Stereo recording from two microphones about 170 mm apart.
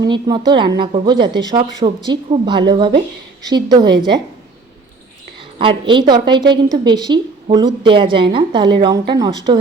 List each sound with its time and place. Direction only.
0.0 s a woman's voice: 25° right (ahead or behind)
5.4 s a woman's voice: 30° right (ahead or behind)